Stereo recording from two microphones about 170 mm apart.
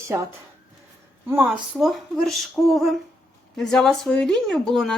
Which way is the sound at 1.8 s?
Centre (ahead or behind).